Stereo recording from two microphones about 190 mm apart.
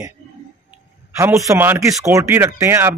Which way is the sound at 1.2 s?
15° right (ahead or behind).